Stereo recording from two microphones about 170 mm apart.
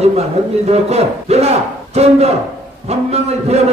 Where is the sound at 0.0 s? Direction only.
40° right (ahead or behind).